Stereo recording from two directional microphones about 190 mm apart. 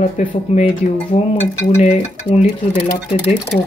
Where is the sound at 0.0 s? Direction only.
40° left (ahead or behind).